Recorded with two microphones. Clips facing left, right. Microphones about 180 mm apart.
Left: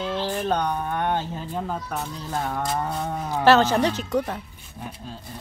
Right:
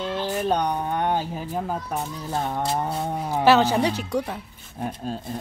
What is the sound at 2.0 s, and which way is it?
Speech, 25° right (ahead or behind).